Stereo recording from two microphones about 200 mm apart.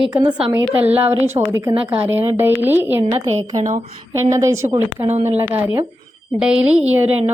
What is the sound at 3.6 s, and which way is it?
Speech, 35° right (ahead or behind).